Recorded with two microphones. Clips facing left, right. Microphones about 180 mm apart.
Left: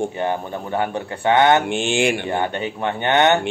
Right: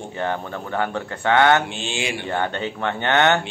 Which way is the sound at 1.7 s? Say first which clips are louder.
Left 8 dB; 55° left (ahead or behind).